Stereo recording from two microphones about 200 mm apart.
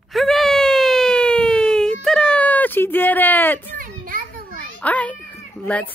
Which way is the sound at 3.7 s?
45° right (ahead or behind).